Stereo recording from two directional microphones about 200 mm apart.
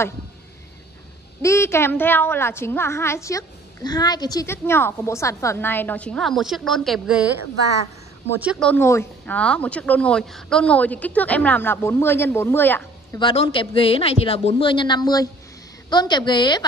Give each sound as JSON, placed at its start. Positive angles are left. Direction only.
{"t": 1.4, "sound": "a woman's voice", "side_deg": 15}
{"t": 8.4, "sound": "speech", "side_deg": -5}
{"t": 8.6, "sound": "a woman's voice", "side_deg": 10}
{"t": 13.2, "sound": "speech", "side_deg": 25}